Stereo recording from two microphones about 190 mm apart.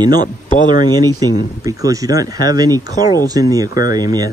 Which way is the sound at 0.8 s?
20° right (ahead or behind).